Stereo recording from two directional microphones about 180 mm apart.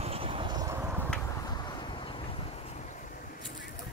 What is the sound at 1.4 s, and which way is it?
Vehicle, 20° left (ahead or behind).